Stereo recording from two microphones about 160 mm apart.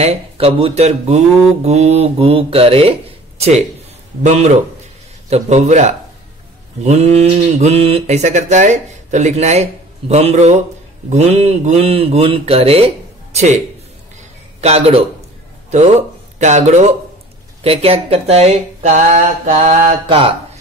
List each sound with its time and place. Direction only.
0.0 s speech: 35° right (ahead or behind)
4.2 s a sound: 45° right (ahead or behind)
11.1 s speech: 45° right (ahead or behind)
14.6 s speech: 40° right (ahead or behind)